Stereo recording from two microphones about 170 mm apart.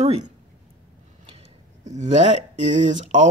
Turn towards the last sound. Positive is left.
turn(degrees=-45)  # may be behind; listen again after turning